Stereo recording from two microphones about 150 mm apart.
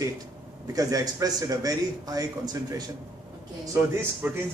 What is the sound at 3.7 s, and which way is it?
Speech, 10° right (ahead or behind).